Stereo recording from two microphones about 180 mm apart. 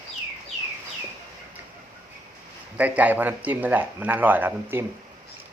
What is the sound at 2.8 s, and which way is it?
Speech, 10° right (ahead or behind).